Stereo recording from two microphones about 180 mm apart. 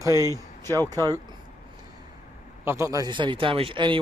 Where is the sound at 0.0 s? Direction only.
15° right (ahead or behind).